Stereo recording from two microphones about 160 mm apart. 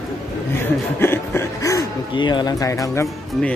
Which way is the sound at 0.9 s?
15° left (ahead or behind).